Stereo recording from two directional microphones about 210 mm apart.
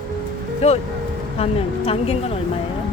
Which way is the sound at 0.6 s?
30° left (ahead or behind).